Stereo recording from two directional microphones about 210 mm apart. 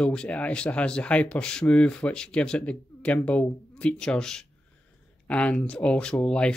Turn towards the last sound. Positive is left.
turn(degrees=5)  # may be behind; listen again after turning